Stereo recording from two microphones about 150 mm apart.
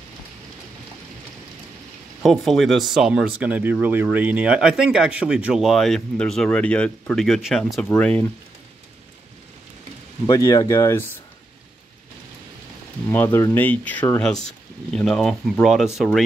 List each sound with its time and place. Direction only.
2.2 s speech: centre (ahead or behind)
10.2 s speech: 25° left (ahead or behind)
13.1 s speech: 15° left (ahead or behind)
14.9 s speech: 5° left (ahead or behind)